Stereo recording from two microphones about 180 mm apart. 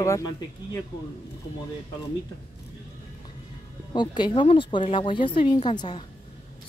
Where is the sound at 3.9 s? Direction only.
25° left (ahead or behind).